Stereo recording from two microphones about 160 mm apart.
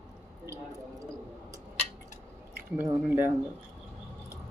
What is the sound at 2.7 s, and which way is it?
Speech, 10° right (ahead or behind).